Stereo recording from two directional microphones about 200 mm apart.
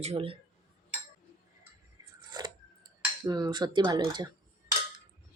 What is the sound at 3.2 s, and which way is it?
Speech, 20° right (ahead or behind).